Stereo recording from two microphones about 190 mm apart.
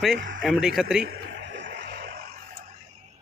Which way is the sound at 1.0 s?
60° right (ahead or behind).